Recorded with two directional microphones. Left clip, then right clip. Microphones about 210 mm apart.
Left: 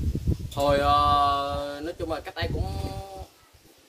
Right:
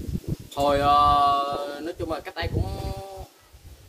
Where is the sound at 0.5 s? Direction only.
15° left (ahead or behind).